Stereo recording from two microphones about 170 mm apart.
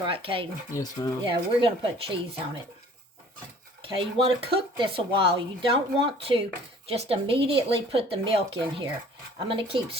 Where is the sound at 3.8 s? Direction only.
30° right (ahead or behind).